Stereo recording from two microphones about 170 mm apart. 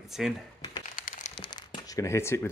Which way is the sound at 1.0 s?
50° left (ahead or behind).